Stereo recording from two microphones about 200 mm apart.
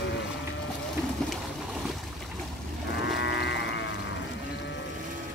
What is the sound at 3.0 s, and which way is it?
Livestock, 60° left (ahead or behind).